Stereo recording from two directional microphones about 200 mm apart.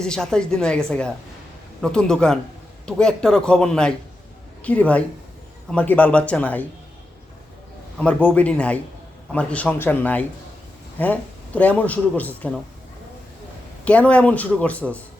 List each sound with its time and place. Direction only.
0.0 s a man's voice: 5° left (ahead or behind)
7.9 s a man's voice: 5° left (ahead or behind)
13.8 s a man's voice: 5° left (ahead or behind)